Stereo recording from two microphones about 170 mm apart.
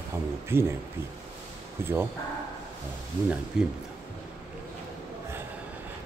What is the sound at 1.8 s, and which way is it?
Speech, 15° right (ahead or behind).